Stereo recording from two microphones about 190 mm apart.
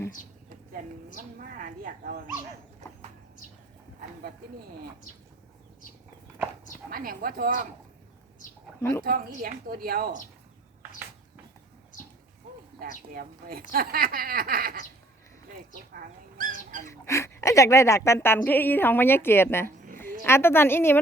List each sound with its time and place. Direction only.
0.7 s speech: 45° right (ahead or behind)
6.9 s speech: 50° right (ahead or behind)
8.8 s a woman's voice: 15° left (ahead or behind)
9.0 s speech: 50° right (ahead or behind)
12.8 s speech: 50° right (ahead or behind)
16.4 s rodents: 45° right (ahead or behind)
16.9 s a woman's voice: 15° left (ahead or behind)
19.6 s a sound: 45° right (ahead or behind)
20.2 s a woman's voice: 10° left (ahead or behind)